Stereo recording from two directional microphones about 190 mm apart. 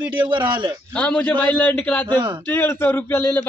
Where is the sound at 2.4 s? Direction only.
10° left (ahead or behind).